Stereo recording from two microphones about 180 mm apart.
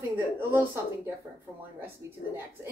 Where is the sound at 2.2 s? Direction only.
60° left (ahead or behind).